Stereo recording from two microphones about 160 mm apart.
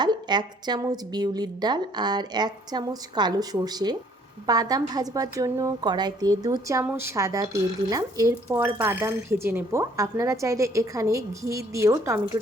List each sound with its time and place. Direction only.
0.0 s a woman's voice: 25° right (ahead or behind)